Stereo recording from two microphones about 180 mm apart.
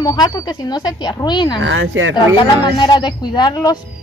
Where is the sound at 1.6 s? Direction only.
90° right.